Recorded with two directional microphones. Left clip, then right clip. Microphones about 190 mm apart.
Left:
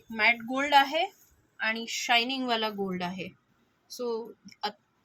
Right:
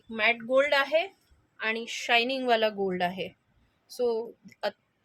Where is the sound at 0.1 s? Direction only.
40° right (ahead or behind); by 3.2 s 65° right (ahead or behind).